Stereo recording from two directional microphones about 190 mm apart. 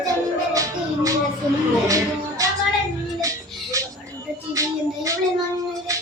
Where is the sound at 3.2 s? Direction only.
15° right (ahead or behind).